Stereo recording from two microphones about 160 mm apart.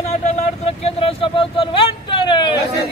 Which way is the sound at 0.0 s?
45° left (ahead or behind).